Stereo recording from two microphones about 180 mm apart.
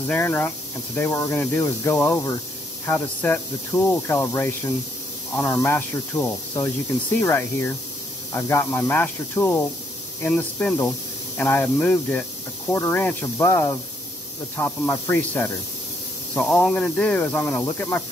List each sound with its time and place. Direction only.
0.0 s speech: 10° left (ahead or behind)